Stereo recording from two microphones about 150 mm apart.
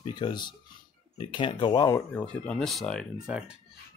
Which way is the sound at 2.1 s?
5° left (ahead or behind).